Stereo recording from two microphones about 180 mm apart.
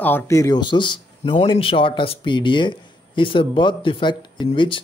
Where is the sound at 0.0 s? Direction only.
15° left (ahead or behind).